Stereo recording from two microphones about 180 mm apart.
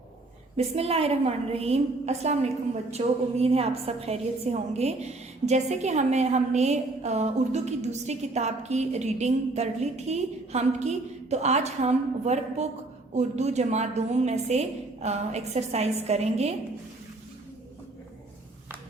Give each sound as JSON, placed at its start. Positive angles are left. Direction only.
{"t": 0.5, "sound": "a woman's voice", "side_deg": -35}